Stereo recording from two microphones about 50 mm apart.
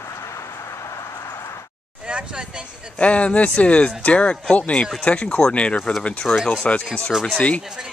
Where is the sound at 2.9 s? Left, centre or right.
Left.